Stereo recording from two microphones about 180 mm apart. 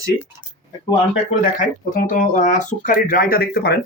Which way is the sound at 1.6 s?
50° left (ahead or behind).